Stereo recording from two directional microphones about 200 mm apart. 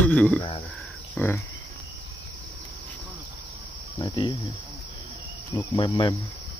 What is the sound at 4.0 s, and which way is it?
Insect, 25° left (ahead or behind).